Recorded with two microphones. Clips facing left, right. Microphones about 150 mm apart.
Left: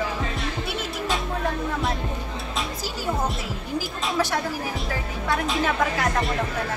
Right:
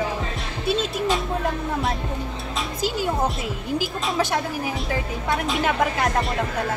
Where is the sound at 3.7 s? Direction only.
20° right (ahead or behind).